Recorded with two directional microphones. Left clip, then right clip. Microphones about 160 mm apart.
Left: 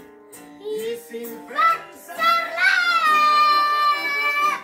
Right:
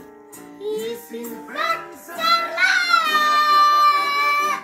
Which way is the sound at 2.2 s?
10° left (ahead or behind).